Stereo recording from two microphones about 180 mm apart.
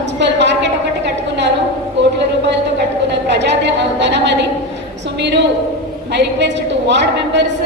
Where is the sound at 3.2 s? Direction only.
75° right (ahead or behind).